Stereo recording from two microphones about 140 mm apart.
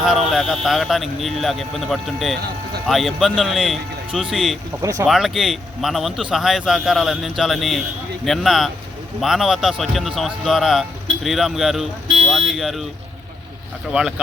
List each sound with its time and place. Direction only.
0.0 s a man's voice: centre (ahead or behind)
4.8 s speech: 20° right (ahead or behind)
5.0 s a man's voice: centre (ahead or behind)